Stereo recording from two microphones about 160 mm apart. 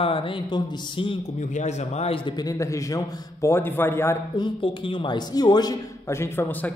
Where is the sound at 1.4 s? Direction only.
45° left (ahead or behind); by 4.2 s 15° left (ahead or behind).